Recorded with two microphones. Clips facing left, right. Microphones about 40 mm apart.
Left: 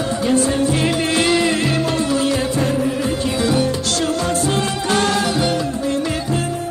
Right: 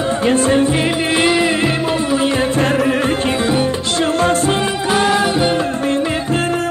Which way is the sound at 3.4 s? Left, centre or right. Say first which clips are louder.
Right 1 dB; right.